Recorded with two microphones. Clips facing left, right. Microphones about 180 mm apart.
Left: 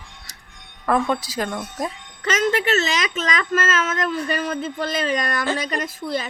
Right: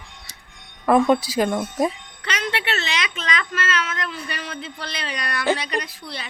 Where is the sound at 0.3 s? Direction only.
40° left (ahead or behind).